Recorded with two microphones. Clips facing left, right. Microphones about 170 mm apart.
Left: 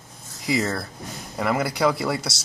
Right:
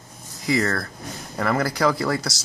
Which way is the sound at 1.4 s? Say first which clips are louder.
Right 1 dB; 5° left (ahead or behind).